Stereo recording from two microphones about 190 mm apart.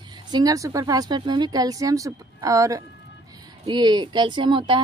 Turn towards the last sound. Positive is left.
turn(degrees=-25)  # may be behind; listen again after turning